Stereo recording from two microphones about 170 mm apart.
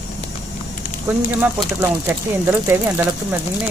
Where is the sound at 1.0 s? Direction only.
10° right (ahead or behind).